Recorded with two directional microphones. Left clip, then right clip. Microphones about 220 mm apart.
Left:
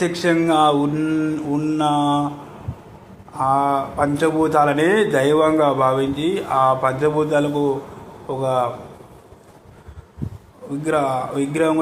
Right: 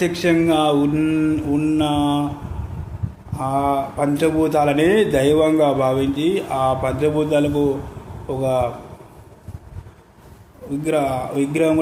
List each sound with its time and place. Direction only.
0.0 s a man's voice: 10° right (ahead or behind)
3.3 s a man's voice: 10° right (ahead or behind)
10.8 s a man's voice: 10° right (ahead or behind)